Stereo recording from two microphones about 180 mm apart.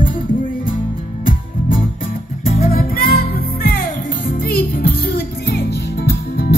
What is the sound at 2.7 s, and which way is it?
Music, 55° left (ahead or behind).